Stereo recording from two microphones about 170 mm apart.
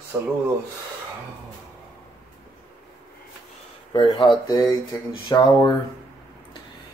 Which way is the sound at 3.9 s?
25° left (ahead or behind).